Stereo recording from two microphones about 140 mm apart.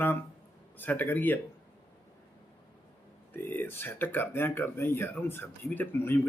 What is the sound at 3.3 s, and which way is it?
Speech, 15° left (ahead or behind).